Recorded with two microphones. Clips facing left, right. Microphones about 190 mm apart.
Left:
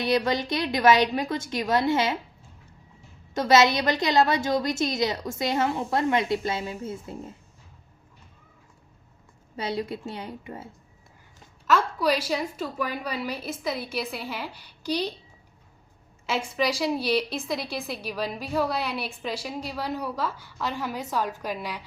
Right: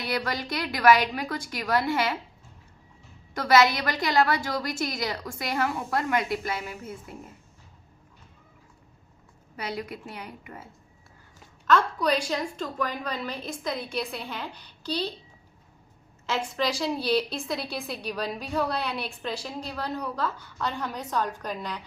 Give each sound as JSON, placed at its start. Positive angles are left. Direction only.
{"t": 0.0, "sound": "a woman's voice", "side_deg": 20}
{"t": 3.3, "sound": "a woman's voice", "side_deg": 25}
{"t": 9.6, "sound": "a woman's voice", "side_deg": 25}
{"t": 11.6, "sound": "a woman's voice", "side_deg": 5}
{"t": 16.2, "sound": "a woman's voice", "side_deg": 10}